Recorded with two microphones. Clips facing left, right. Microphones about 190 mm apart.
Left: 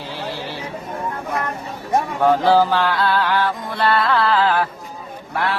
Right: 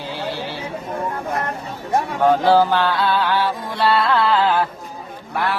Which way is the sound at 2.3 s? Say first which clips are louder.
Even; centre (ahead or behind).